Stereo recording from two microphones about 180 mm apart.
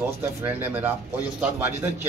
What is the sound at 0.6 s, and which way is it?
Speech, 10° right (ahead or behind).